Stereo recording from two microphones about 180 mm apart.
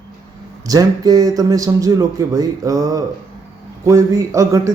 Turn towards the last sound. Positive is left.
turn(degrees=-20)  # may be behind; listen again after turning